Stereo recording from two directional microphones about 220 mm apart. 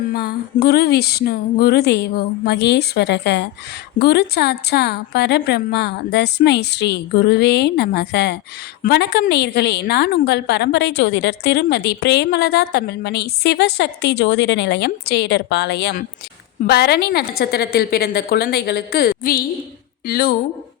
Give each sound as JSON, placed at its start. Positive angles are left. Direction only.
{"t": 0.1, "sound": "a woman's voice", "side_deg": 45}